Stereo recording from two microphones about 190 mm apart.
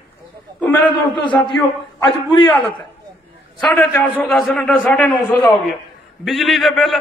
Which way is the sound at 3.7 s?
10° left (ahead or behind).